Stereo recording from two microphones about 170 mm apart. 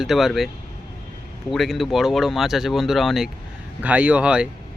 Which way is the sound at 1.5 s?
Centre (ahead or behind).